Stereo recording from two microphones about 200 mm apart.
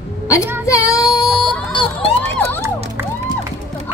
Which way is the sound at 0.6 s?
15° left (ahead or behind).